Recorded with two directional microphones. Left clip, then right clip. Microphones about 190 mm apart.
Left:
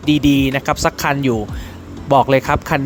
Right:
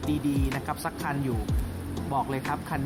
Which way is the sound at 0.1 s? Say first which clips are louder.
Left 16 dB; 50° left (ahead or behind).